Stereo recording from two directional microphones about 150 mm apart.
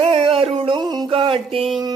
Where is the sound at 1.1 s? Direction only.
40° right (ahead or behind).